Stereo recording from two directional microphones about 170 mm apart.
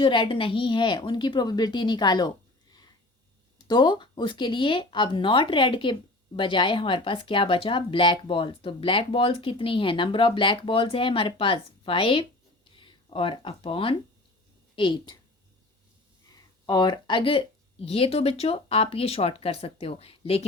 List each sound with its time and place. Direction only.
0.0 s a woman's voice: 30° left (ahead or behind)
3.7 s a woman's voice: 25° left (ahead or behind)
16.3 s speech: 25° left (ahead or behind)